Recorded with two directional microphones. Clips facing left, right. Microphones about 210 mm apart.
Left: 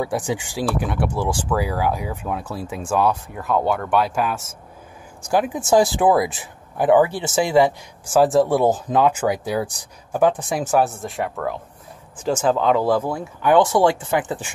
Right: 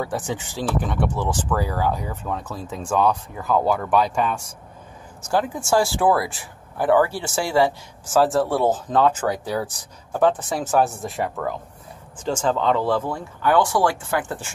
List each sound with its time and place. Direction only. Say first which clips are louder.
0.0 s speech: left 3 dB; 10° left (ahead or behind)
5.2 s speech: left 2 dB; 15° left (ahead or behind)
10.8 s speech: even; centre (ahead or behind); by 14.5 s 15° left (ahead or behind)